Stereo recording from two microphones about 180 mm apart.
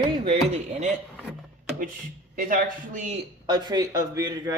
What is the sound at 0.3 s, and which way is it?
Speech, 40° right (ahead or behind).